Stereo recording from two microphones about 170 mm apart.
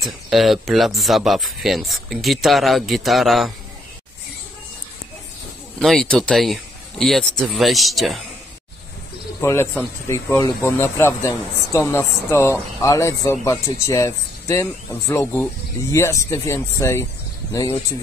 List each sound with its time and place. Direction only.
0.0 s speech: centre (ahead or behind)
5.8 s speech: centre (ahead or behind)
9.4 s speech: 15° left (ahead or behind)